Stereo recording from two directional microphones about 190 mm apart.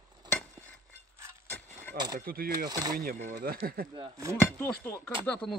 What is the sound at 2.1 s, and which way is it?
Speech, 50° right (ahead or behind).